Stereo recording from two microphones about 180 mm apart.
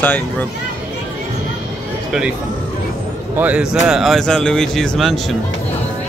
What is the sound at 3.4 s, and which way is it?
A man's voice, 5° right (ahead or behind).